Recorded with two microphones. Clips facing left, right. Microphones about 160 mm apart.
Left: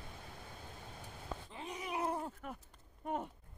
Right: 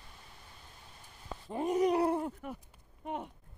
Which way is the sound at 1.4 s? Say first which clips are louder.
Right 19 dB; 50° right (ahead or behind).